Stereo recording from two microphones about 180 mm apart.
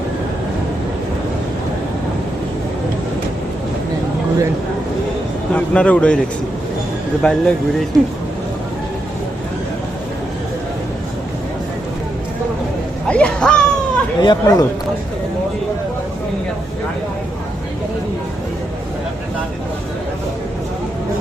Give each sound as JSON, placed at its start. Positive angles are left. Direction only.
{"t": 5.5, "sound": "speech", "side_deg": 5}
{"t": 7.2, "sound": "speech", "side_deg": 5}
{"t": 13.1, "sound": "a sound", "side_deg": 5}
{"t": 14.2, "sound": "speech", "side_deg": 20}